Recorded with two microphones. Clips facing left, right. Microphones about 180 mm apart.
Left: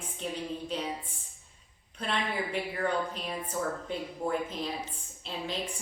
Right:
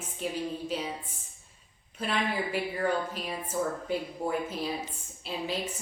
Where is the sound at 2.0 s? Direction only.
5° right (ahead or behind).